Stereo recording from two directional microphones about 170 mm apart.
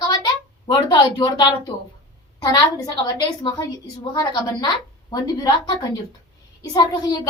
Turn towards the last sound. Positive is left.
turn(degrees=25)  # may be behind; listen again after turning